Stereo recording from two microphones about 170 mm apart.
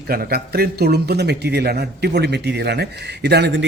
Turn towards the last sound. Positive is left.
turn(degrees=-80)